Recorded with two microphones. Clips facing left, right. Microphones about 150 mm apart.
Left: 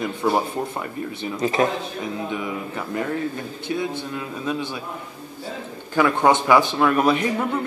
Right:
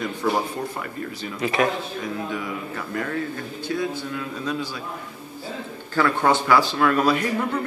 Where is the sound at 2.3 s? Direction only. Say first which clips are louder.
Left 2 dB; 20° left (ahead or behind).